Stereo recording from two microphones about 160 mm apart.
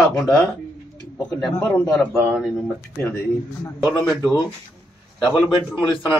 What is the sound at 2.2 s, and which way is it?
Speech, 5° right (ahead or behind).